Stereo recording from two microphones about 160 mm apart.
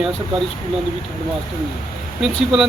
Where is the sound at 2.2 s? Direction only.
5° right (ahead or behind).